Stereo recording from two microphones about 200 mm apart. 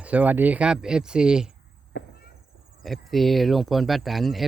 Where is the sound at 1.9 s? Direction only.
60° left (ahead or behind).